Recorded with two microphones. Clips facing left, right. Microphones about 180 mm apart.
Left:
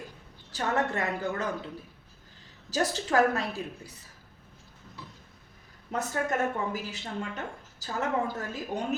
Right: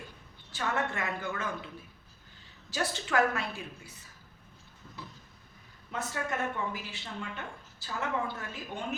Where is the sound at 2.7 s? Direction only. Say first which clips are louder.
Left 4 dB; 40° left (ahead or behind).